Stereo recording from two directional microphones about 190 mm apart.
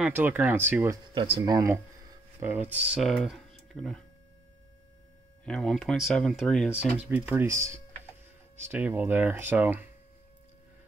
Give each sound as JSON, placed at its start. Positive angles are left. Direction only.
{"t": 0.0, "sound": "speech", "side_deg": -10}
{"t": 1.1, "sound": "speech", "side_deg": -30}
{"t": 1.4, "sound": "speech", "side_deg": -15}
{"t": 5.4, "sound": "speech", "side_deg": 0}
{"t": 7.0, "sound": "speech", "side_deg": -10}